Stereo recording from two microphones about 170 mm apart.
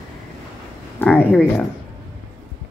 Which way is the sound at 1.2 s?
5° right (ahead or behind).